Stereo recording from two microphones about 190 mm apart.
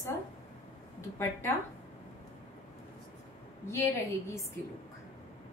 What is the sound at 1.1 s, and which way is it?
Speech, 10° left (ahead or behind).